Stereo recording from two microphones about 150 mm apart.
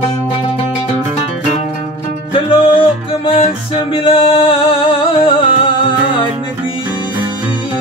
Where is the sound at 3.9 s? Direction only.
35° left (ahead or behind).